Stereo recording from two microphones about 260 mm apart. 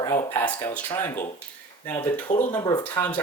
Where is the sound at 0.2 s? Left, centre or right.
Centre.